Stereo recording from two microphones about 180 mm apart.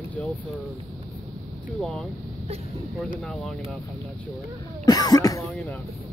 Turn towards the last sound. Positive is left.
turn(degrees=10)  # may be behind; listen again after turning